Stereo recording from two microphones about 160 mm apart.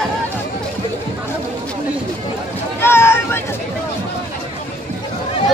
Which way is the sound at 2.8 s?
15° left (ahead or behind).